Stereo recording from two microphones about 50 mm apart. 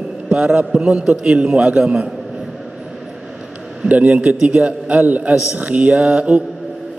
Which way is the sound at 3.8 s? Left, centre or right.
Right.